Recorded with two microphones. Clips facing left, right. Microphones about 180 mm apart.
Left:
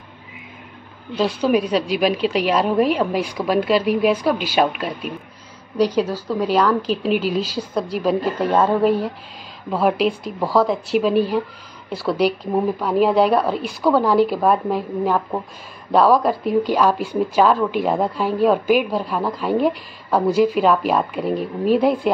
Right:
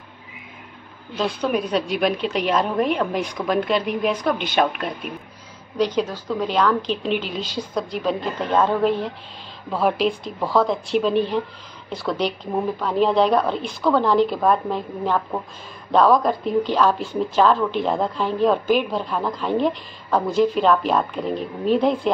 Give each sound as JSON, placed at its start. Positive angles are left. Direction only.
{"t": 1.1, "sound": "a woman's voice", "side_deg": 10}